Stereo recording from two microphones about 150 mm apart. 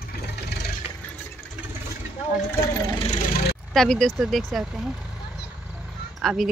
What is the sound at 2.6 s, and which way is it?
Speech, 30° left (ahead or behind).